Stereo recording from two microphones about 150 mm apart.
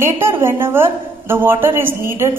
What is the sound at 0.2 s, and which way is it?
A woman's voice, 15° right (ahead or behind).